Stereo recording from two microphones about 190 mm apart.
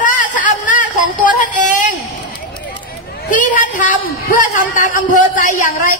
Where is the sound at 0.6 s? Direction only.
45° left (ahead or behind).